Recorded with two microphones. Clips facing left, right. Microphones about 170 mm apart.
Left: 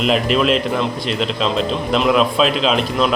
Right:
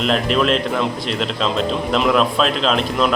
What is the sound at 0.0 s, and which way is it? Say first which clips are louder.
A man's voice: left 1 dB; 5° left (ahead or behind).